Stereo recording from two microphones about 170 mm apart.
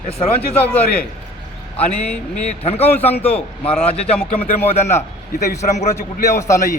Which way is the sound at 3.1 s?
10° left (ahead or behind).